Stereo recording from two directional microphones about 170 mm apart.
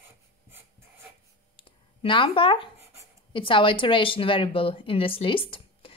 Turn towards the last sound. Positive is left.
turn(degrees=35)  # may be behind; listen again after turning